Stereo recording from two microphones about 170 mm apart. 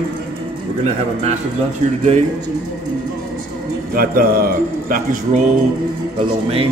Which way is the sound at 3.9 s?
60° right (ahead or behind).